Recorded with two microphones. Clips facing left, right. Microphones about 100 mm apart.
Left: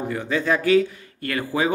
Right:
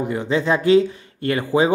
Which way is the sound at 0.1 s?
20° right (ahead or behind).